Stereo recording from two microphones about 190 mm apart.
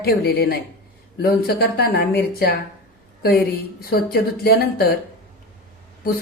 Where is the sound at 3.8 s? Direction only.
50° left (ahead or behind).